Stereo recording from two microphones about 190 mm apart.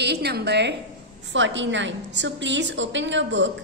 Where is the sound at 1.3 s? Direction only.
75° right (ahead or behind).